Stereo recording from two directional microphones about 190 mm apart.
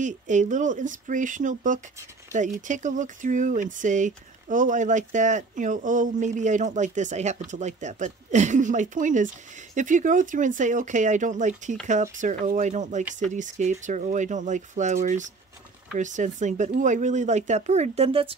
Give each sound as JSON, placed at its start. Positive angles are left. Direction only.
{"t": 0.0, "sound": "speech", "side_deg": -40}